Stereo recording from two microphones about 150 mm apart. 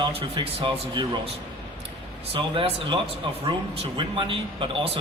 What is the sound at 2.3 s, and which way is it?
Speech, 35° right (ahead or behind).